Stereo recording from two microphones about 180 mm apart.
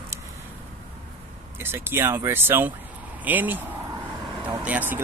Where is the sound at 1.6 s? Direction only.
10° right (ahead or behind).